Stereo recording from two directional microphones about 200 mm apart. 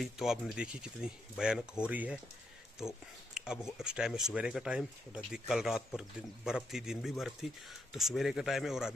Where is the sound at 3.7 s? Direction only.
5° right (ahead or behind).